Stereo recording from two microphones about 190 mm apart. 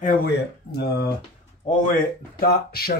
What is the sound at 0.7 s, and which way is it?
Speech, 55° left (ahead or behind).